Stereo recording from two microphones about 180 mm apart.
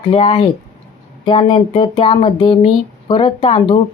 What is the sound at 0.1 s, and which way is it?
A woman's voice, 30° left (ahead or behind).